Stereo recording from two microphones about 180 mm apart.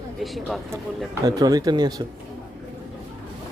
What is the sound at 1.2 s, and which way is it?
Speech, 20° right (ahead or behind).